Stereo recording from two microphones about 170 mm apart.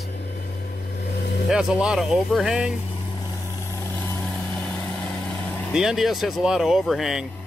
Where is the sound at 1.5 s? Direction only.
5° right (ahead or behind).